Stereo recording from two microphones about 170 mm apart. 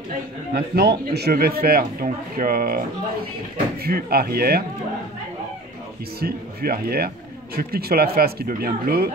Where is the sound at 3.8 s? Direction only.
65° right (ahead or behind).